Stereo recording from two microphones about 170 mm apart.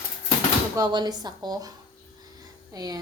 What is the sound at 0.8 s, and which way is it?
Speech, 25° right (ahead or behind).